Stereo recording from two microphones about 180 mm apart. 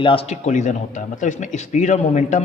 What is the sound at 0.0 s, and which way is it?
Speech, 30° left (ahead or behind).